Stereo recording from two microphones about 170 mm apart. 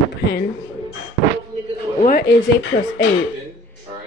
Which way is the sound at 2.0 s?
55° left (ahead or behind).